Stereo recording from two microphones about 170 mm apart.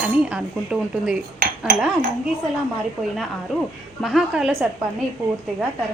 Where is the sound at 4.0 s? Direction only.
Centre (ahead or behind).